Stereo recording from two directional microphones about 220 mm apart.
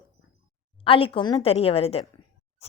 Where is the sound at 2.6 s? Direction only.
30° left (ahead or behind).